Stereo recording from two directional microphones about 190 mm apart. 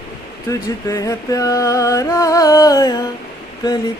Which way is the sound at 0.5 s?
15° left (ahead or behind).